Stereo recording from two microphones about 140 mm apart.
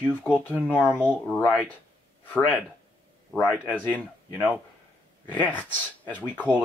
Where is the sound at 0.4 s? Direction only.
10° left (ahead or behind).